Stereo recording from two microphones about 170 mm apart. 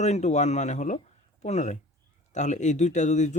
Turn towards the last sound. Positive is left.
turn(degrees=45)  # may be behind; listen again after turning